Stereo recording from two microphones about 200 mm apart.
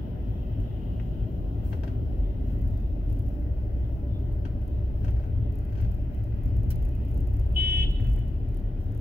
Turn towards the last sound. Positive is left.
turn(degrees=-55)  # may be behind; listen again after turning